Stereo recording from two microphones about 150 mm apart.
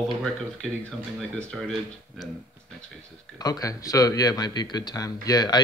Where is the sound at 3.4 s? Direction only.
25° left (ahead or behind).